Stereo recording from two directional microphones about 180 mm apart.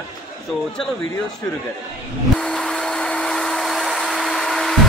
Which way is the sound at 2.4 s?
5° left (ahead or behind).